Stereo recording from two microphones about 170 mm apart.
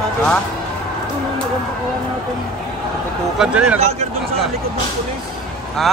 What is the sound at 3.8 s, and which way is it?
Speech, 40° right (ahead or behind).